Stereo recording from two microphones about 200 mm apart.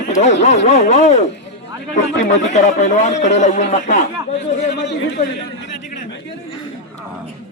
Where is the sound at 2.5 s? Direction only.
35° left (ahead or behind).